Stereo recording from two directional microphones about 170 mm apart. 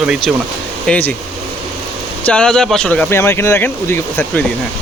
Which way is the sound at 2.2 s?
5° left (ahead or behind).